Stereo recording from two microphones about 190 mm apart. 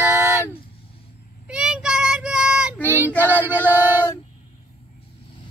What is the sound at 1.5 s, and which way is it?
Child singing, 5° right (ahead or behind).